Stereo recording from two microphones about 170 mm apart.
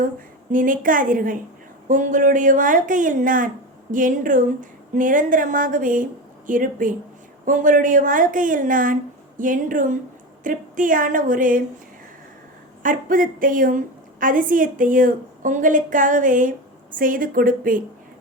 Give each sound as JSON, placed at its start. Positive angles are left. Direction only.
{"t": 0.5, "sound": "a woman's voice", "side_deg": -50}
{"t": 12.8, "sound": "a woman's voice", "side_deg": -50}